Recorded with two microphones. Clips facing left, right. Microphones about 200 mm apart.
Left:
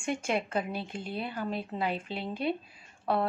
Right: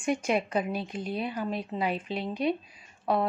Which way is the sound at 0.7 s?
25° left (ahead or behind).